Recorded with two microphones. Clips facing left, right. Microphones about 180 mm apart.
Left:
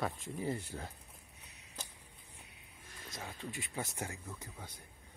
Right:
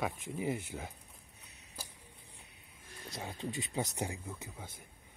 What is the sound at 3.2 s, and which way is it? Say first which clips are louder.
Speech: right 5 dB; 20° right (ahead or behind).